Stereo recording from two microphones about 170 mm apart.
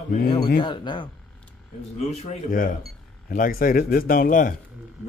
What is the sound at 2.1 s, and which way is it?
Speech, 40° left (ahead or behind).